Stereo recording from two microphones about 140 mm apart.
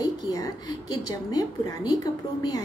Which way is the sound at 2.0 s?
30° left (ahead or behind).